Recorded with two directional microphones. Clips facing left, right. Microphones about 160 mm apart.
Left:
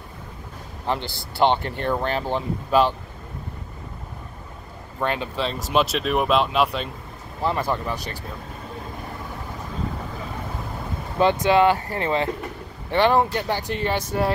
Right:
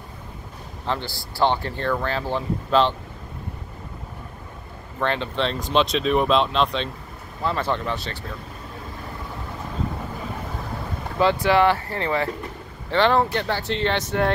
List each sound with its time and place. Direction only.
0.8 s speech: 20° left (ahead or behind)
5.0 s speech: 10° left (ahead or behind)
11.1 s speech: 20° left (ahead or behind)